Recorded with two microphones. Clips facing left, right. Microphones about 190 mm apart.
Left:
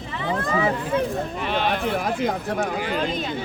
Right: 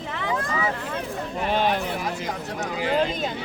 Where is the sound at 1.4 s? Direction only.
40° right (ahead or behind).